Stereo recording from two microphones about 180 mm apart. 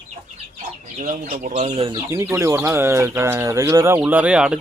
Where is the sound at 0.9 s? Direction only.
50° right (ahead or behind).